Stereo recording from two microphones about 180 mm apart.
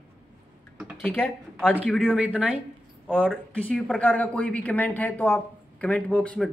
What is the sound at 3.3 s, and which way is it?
Speech, 5° left (ahead or behind).